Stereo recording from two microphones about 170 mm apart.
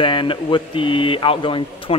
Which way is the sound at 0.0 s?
30° left (ahead or behind).